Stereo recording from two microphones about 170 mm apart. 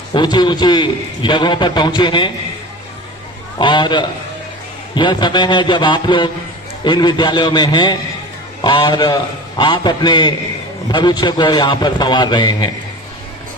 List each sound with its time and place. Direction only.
0.1 s a man's voice: 25° left (ahead or behind)
3.5 s a man's voice: 25° left (ahead or behind)